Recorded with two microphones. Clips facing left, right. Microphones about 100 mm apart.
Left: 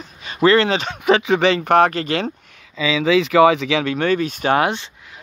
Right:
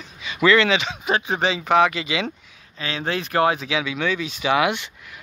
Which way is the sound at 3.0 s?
90° left.